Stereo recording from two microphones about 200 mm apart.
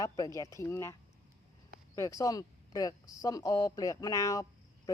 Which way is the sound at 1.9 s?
15° left (ahead or behind).